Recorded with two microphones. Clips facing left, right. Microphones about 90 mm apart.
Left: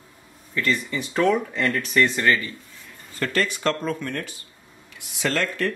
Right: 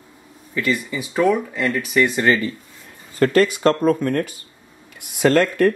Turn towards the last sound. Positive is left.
turn(degrees=-50)  # may be behind; listen again after turning